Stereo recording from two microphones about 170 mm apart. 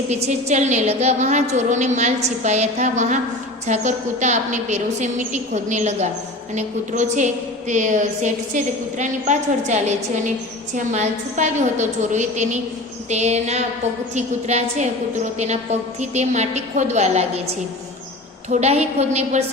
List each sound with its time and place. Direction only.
0.1 s a woman's voice: 40° right (ahead or behind)
18.5 s a woman's voice: 40° right (ahead or behind)